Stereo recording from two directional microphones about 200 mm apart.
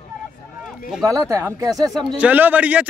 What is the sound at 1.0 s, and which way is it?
Speech, 15° right (ahead or behind).